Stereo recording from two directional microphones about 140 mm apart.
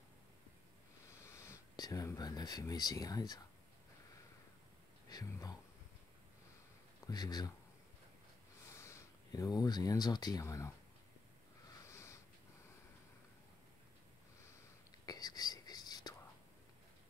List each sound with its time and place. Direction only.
1.2 s a sound: 20° left (ahead or behind)
5.1 s speech: 25° left (ahead or behind)
7.1 s speech: 30° left (ahead or behind)
8.7 s speech: 20° left (ahead or behind)
11.8 s sniff: 20° left (ahead or behind)
15.0 s whispering: 30° left (ahead or behind)